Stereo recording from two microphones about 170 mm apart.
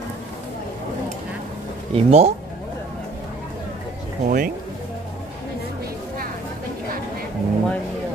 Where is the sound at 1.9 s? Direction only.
40° right (ahead or behind).